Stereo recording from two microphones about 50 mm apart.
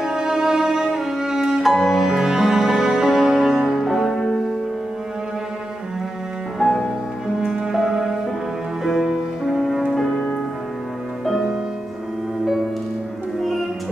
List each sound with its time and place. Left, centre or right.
0.0 s music: centre
1.6 s music: centre
3.8 s music: centre
6.6 s music: centre
7.7 s music: centre
11.2 s music: centre